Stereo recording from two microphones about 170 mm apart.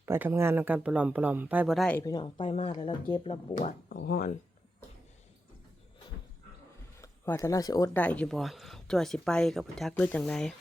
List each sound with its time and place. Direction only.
0.0 s speech: 15° right (ahead or behind); by 2.0 s centre (ahead or behind)
2.0 s speech: 25° left (ahead or behind)
3.8 s speech: 65° left (ahead or behind)
7.0 s speech: 15° left (ahead or behind)
7.9 s speech: 10° left (ahead or behind)